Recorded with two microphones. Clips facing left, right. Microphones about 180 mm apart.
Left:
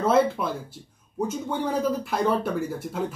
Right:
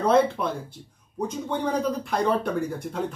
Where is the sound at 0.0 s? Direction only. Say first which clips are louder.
Right 1 dB; 5° left (ahead or behind).